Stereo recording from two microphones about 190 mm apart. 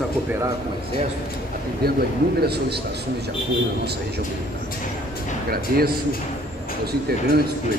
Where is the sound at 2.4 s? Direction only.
60° right (ahead or behind).